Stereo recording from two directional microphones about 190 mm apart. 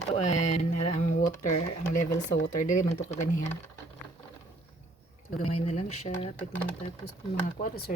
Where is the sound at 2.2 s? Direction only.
65° left (ahead or behind).